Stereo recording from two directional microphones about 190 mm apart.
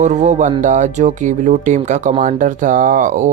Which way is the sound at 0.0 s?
40° right (ahead or behind).